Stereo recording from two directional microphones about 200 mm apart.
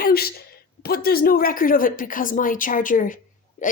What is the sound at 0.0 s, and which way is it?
A woman's voice, 50° left (ahead or behind).